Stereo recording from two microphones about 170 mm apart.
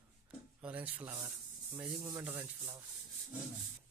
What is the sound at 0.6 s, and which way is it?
Speech, 5° right (ahead or behind).